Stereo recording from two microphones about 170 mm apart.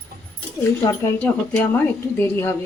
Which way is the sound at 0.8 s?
25° left (ahead or behind).